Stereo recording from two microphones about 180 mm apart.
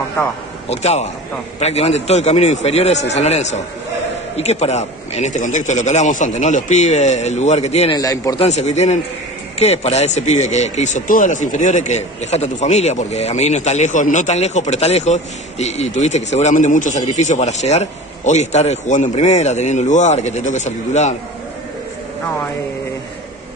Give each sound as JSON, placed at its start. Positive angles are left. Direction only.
{"t": 0.7, "sound": "a man's voice", "side_deg": 35}
{"t": 7.9, "sound": "a man's voice", "side_deg": 20}
{"t": 8.4, "sound": "a man's voice", "side_deg": 40}